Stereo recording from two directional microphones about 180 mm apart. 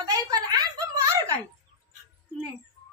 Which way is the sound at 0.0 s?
20° right (ahead or behind).